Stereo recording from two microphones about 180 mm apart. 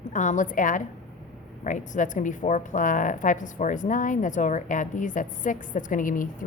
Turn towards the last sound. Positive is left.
turn(degrees=50)  # may be behind; listen again after turning